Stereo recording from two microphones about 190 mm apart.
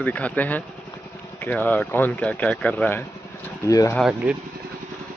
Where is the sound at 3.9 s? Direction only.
5° right (ahead or behind).